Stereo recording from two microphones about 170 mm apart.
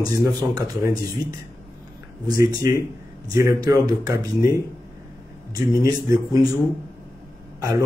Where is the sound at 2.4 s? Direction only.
20° right (ahead or behind).